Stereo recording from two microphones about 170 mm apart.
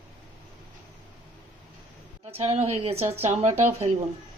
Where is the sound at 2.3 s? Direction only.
35° right (ahead or behind).